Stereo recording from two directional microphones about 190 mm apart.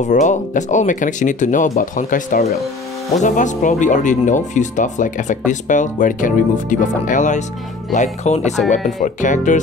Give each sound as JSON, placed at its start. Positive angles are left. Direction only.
{"t": 0.0, "sound": "speech", "side_deg": 40}